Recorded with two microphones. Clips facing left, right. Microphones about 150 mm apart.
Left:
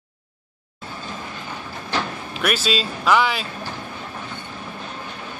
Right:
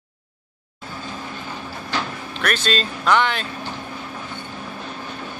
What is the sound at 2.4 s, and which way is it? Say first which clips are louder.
Speech: even; 5° left (ahead or behind).